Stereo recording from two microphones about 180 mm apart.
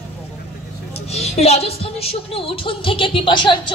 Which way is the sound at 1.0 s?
35° left (ahead or behind).